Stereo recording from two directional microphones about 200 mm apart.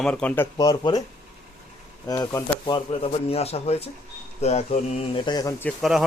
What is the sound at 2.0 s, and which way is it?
Speech, 15° left (ahead or behind).